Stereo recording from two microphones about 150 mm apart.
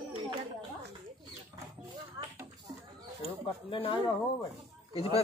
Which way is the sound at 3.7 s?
35° left (ahead or behind).